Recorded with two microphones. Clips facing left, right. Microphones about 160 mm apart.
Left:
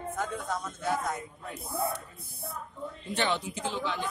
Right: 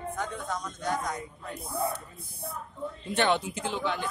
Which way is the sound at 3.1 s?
60° right (ahead or behind).